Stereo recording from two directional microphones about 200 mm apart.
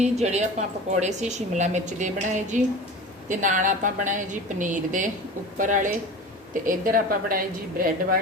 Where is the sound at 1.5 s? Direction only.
35° right (ahead or behind).